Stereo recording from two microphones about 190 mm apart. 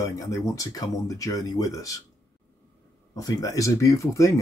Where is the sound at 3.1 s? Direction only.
20° left (ahead or behind).